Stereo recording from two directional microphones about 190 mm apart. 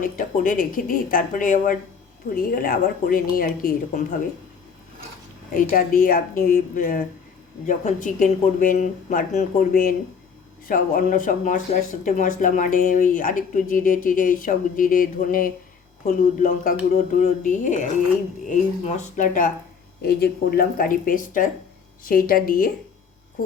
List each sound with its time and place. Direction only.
0.0 s speech: 45° left (ahead or behind)
5.5 s speech: 45° left (ahead or behind)
20.0 s speech: 55° left (ahead or behind)